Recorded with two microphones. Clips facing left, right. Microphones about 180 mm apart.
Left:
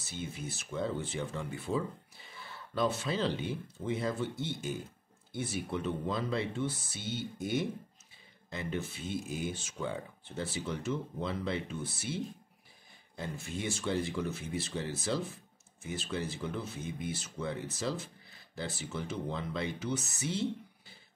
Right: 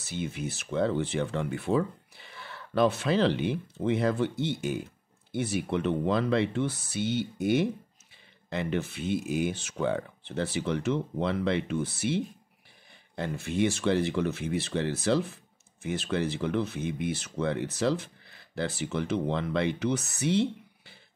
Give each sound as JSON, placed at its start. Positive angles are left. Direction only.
{"t": 0.1, "sound": "speech", "side_deg": -75}